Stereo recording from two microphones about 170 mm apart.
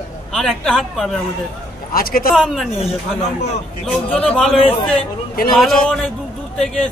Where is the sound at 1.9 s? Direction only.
60° left (ahead or behind).